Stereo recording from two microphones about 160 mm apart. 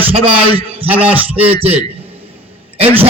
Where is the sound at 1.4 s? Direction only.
35° right (ahead or behind).